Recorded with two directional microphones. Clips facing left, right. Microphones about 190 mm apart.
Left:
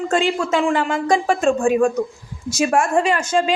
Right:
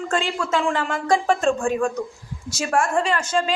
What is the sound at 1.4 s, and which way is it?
A woman's voice, 5° left (ahead or behind).